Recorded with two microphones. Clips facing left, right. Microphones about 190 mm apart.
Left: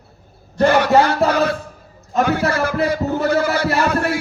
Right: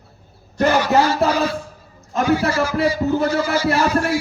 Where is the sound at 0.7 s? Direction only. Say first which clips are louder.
Left 2 dB; 60° left (ahead or behind).